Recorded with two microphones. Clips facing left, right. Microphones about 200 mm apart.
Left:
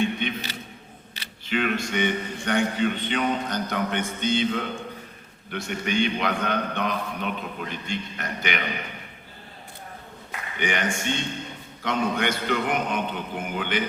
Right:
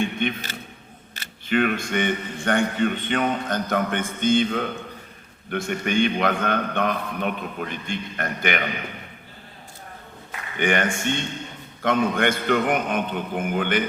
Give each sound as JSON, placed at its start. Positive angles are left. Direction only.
{"t": 0.0, "sound": "speech", "side_deg": -50}
{"t": 10.6, "sound": "speech", "side_deg": -55}